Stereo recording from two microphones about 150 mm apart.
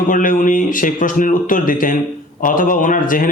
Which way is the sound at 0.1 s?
65° left (ahead or behind).